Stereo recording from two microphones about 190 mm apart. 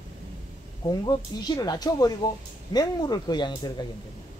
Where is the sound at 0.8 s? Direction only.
20° left (ahead or behind).